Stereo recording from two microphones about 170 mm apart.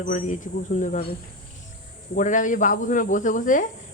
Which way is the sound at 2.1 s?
50° left (ahead or behind).